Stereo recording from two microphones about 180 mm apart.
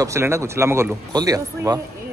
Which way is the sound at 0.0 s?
15° right (ahead or behind).